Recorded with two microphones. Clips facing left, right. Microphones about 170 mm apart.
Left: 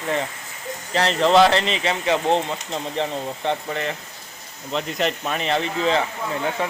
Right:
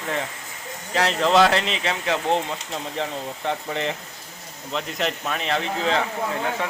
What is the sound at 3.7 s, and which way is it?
Speech, 15° right (ahead or behind).